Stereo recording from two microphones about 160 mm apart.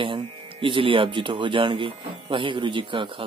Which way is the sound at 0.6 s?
30° right (ahead or behind).